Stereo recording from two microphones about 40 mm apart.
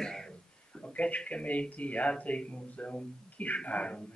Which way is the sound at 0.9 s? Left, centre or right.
Left.